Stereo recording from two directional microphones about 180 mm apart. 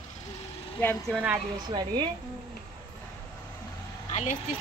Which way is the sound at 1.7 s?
25° right (ahead or behind).